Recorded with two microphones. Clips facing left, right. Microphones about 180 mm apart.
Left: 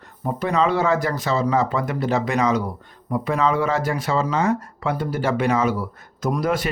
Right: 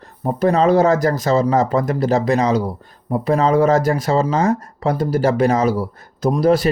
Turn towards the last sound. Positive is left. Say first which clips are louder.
# right 7 dB
turn(degrees=-35)  # may be behind; listen again after turning